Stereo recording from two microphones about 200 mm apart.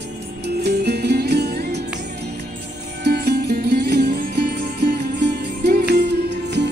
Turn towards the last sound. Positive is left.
turn(degrees=-60)  # may be behind; listen again after turning